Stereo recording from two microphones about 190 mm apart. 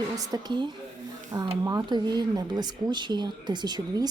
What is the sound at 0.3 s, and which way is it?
A woman's voice, 20° right (ahead or behind).